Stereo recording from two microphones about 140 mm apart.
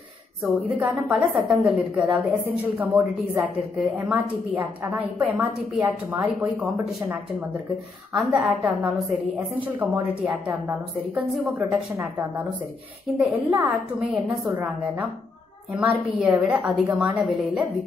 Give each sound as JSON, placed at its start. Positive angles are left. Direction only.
{"t": 0.4, "sound": "a woman's voice", "side_deg": -10}
{"t": 8.1, "sound": "a woman's voice", "side_deg": -5}
{"t": 10.2, "sound": "a woman's voice", "side_deg": -5}
{"t": 13.2, "sound": "a woman's voice", "side_deg": -10}
{"t": 15.7, "sound": "a woman's voice", "side_deg": -5}